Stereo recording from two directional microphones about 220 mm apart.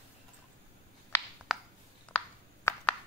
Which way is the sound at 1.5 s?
Centre (ahead or behind).